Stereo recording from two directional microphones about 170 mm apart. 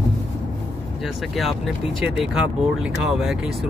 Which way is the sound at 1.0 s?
Centre (ahead or behind).